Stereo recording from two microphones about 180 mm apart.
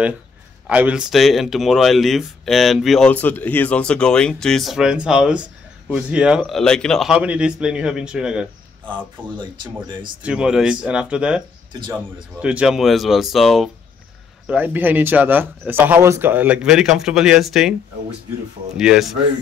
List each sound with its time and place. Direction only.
0.7 s speech: 5° right (ahead or behind)
8.8 s speech: 25° right (ahead or behind)
10.2 s speech: 5° right (ahead or behind)
18.8 s speech: 5° right (ahead or behind)